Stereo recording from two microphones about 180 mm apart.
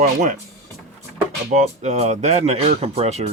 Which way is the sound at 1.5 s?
40° right (ahead or behind).